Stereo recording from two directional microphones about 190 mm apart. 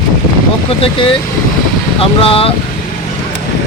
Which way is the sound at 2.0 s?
30° left (ahead or behind).